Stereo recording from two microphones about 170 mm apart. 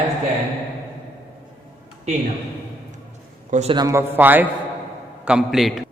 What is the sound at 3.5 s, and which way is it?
Speech, 40° right (ahead or behind).